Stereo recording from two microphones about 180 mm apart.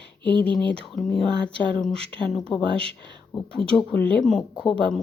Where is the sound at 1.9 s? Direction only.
30° right (ahead or behind).